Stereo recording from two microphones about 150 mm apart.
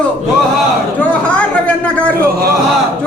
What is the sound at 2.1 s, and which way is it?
Speech, 90° right.